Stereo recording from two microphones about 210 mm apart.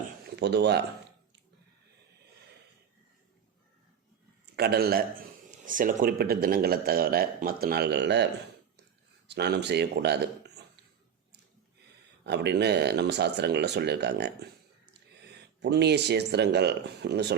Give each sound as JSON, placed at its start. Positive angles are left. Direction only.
{"t": 0.3, "sound": "a man's voice", "side_deg": -55}
{"t": 4.5, "sound": "a man's voice", "side_deg": -50}
{"t": 12.2, "sound": "a man's voice", "side_deg": -55}
{"t": 15.6, "sound": "a man's voice", "side_deg": -50}